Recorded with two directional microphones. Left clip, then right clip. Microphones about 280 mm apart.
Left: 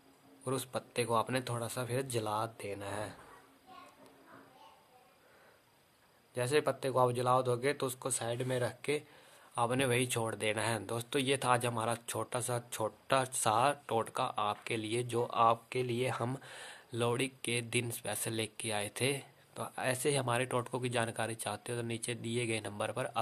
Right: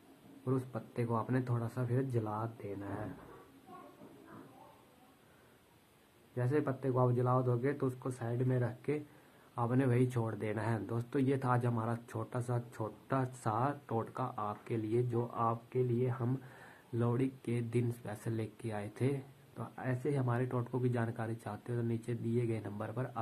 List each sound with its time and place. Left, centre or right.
0.5 s speech: left
6.3 s speech: left